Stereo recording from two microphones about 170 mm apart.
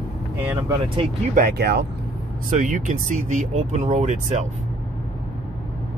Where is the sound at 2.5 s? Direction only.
50° right (ahead or behind).